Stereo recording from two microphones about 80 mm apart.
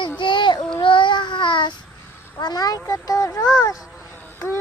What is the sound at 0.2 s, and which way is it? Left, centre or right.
Child singing, left.